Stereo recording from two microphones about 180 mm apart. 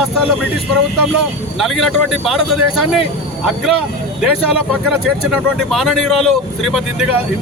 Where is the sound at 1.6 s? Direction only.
Centre (ahead or behind).